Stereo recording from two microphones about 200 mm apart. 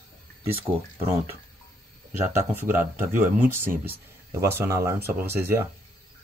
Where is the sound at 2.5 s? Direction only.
10° right (ahead or behind).